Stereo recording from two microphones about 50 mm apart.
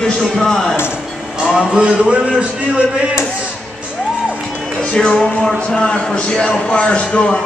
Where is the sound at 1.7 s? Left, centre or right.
Right.